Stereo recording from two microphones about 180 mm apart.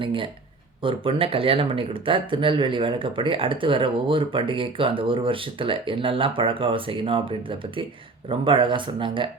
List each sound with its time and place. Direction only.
0.0 s speech: 30° right (ahead or behind)